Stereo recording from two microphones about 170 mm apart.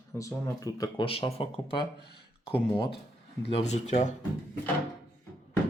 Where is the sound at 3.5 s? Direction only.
40° left (ahead or behind).